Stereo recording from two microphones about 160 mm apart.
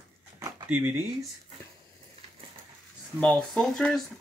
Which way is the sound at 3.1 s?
5° left (ahead or behind).